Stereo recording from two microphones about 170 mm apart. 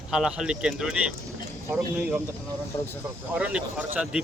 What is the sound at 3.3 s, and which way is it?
Speech, 5° right (ahead or behind).